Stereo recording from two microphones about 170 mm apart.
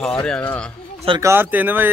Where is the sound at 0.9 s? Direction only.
30° right (ahead or behind).